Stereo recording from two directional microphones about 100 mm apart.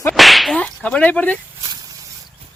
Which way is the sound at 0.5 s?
10° left (ahead or behind).